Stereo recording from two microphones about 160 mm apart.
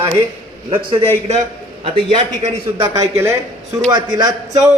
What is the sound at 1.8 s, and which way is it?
Speech, 30° right (ahead or behind).